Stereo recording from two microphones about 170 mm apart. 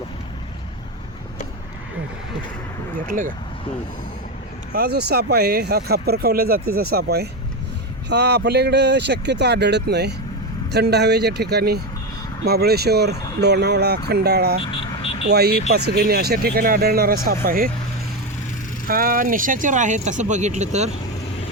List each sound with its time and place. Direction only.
3.1 s speech: 50° right (ahead or behind)
4.7 s speech: 65° right (ahead or behind)
8.1 s speech: 80° right
14.6 s vehicle: 30° left (ahead or behind)
15.3 s speech: 70° right (ahead or behind)
18.9 s speech: 55° right (ahead or behind); by 20.9 s 40° right (ahead or behind)